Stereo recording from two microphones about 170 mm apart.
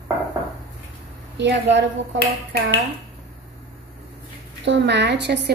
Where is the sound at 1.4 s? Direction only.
90° right.